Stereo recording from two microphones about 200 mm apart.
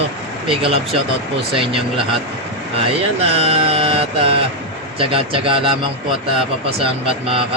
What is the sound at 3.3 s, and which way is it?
Mantra, 30° right (ahead or behind).